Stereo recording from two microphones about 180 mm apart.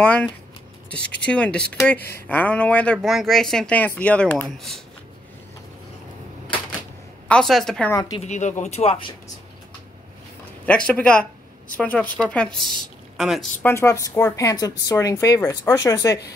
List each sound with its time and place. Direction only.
0.0 s speech: 5° left (ahead or behind)
7.2 s a woman's voice: 5° left (ahead or behind)
7.9 s a woman's voice: 20° left (ahead or behind)
8.2 s speech: 40° left (ahead or behind)
10.6 s a woman's voice: 5° left (ahead or behind)
13.6 s speech: 15° left (ahead or behind)